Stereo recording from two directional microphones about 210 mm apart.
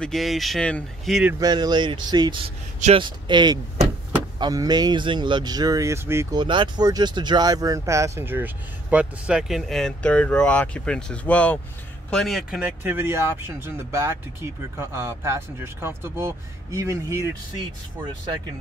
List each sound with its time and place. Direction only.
0.0 s speech: centre (ahead or behind)
1.4 s speech: 20° right (ahead or behind)
6.4 s speech: 20° right (ahead or behind)